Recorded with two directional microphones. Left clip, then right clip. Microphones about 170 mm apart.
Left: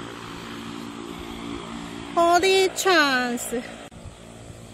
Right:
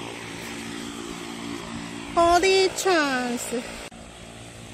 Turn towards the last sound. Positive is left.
turn(degrees=-35)  # may be behind; listen again after turning